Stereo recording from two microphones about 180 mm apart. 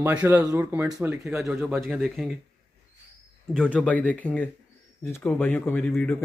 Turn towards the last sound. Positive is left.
turn(degrees=5)  # may be behind; listen again after turning